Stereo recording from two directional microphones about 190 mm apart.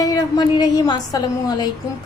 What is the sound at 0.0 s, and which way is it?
A woman's voice, 20° left (ahead or behind).